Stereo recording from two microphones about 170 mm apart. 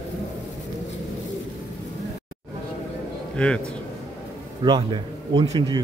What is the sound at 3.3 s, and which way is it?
Speech, 5° left (ahead or behind).